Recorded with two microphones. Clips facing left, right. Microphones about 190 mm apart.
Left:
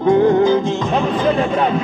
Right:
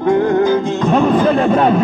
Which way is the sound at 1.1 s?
50° right (ahead or behind).